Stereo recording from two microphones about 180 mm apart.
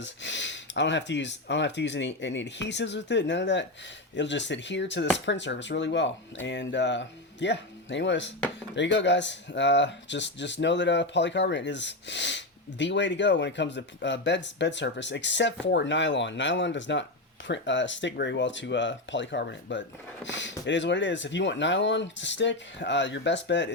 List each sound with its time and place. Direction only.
0.0 s speech: 85° left
20.2 s speech: 90° left